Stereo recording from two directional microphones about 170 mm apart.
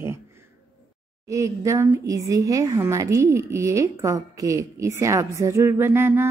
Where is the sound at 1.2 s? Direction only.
20° right (ahead or behind).